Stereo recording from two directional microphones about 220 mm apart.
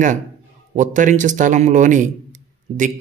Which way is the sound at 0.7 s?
35° right (ahead or behind).